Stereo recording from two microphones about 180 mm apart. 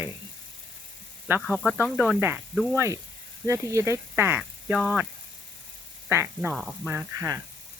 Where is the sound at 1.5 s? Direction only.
5° right (ahead or behind).